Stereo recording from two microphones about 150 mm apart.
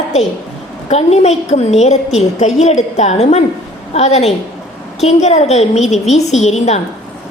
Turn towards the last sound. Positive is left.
turn(degrees=45)  # may be behind; listen again after turning